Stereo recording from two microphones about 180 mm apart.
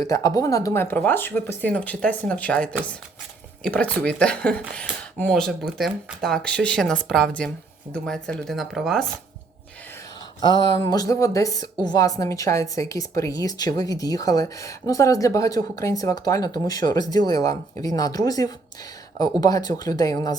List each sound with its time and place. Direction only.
0.0 s speech: 20° left (ahead or behind); by 9.0 s centre (ahead or behind)
10.4 s a woman's voice: 25° left (ahead or behind)